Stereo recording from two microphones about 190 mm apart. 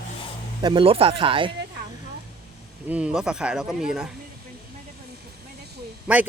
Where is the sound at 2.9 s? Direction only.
5° right (ahead or behind).